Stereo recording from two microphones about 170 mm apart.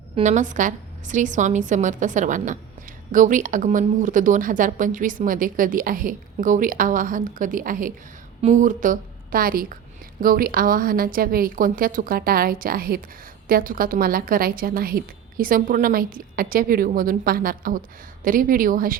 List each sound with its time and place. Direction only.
0.2 s speech: 45° right (ahead or behind)
8.4 s a woman's voice: 45° right (ahead or behind)